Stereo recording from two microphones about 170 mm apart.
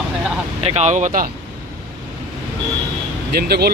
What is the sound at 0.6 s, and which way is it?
Speech, 40° right (ahead or behind).